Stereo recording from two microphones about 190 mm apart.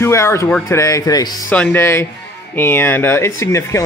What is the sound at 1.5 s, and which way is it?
Speech, 5° left (ahead or behind).